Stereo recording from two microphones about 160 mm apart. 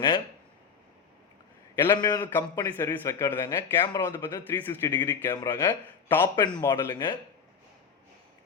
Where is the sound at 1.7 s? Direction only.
15° left (ahead or behind).